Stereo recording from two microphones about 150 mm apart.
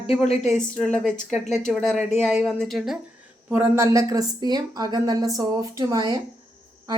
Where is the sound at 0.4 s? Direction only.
5° left (ahead or behind).